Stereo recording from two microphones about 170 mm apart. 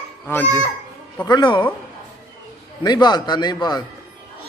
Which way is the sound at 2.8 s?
25° left (ahead or behind).